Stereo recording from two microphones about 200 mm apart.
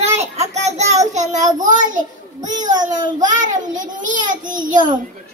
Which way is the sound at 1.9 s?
40° right (ahead or behind).